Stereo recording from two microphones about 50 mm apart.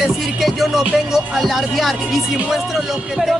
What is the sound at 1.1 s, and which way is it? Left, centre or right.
A man's voice, centre.